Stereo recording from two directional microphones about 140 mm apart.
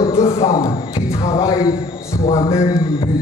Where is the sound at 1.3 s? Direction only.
30° left (ahead or behind).